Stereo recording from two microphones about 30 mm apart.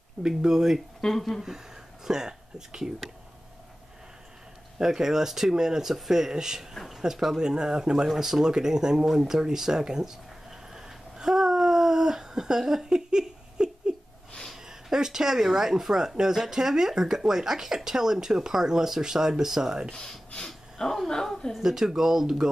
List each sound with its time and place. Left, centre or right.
0.2 s speech: centre
1.1 s speech: centre
2.0 s speech: centre
4.7 s speech: centre
7.3 s speech: right
10.7 s a sound: right
11.2 s a sound: centre
14.7 s speech: centre
19.9 s speech: centre
21.1 s a woman's voice: left
21.6 s speech: centre